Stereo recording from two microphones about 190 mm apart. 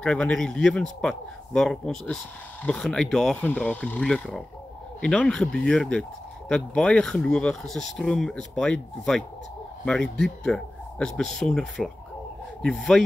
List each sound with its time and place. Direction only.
0.0 s speech: 5° left (ahead or behind)